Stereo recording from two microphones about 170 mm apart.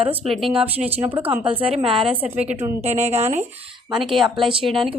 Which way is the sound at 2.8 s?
40° right (ahead or behind).